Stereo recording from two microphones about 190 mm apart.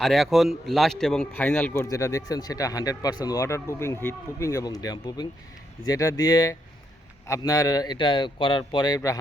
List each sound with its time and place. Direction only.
0.0 s a man's voice: centre (ahead or behind); by 9.0 s 25° left (ahead or behind)